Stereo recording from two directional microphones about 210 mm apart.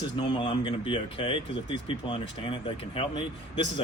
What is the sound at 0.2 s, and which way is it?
Speech, 20° left (ahead or behind).